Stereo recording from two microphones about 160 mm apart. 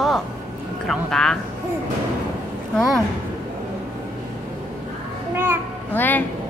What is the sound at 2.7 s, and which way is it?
Speech, centre (ahead or behind).